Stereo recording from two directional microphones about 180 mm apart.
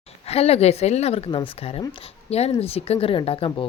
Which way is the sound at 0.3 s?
35° left (ahead or behind).